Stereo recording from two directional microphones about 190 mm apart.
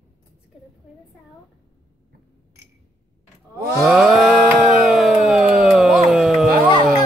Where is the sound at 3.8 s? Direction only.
Centre (ahead or behind).